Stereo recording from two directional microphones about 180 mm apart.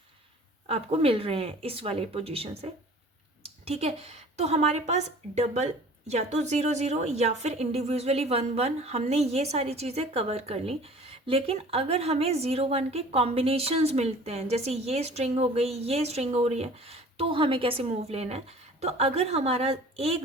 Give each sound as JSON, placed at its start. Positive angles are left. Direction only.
{"t": 0.7, "sound": "a woman's voice", "side_deg": -35}